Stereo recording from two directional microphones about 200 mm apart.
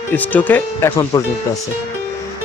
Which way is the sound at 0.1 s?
10° left (ahead or behind).